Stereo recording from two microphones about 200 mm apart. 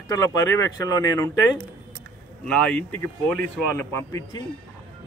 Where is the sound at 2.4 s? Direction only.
5° left (ahead or behind).